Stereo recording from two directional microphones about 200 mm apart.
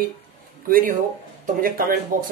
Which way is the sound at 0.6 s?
45° right (ahead or behind).